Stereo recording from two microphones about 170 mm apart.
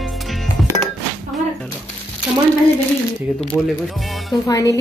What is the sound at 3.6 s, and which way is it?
Speech, centre (ahead or behind).